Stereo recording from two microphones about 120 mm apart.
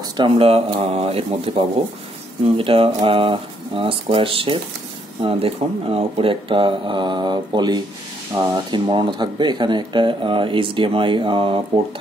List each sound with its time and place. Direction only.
0.2 s speech: 45° right (ahead or behind)